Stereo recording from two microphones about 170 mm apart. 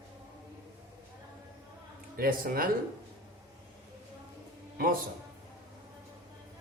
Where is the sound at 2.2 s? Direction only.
60° right (ahead or behind).